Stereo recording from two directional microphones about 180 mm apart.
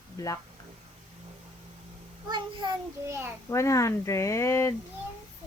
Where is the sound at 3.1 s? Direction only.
15° right (ahead or behind).